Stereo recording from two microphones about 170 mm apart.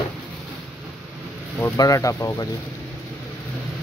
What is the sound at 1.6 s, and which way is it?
Speech, 20° left (ahead or behind).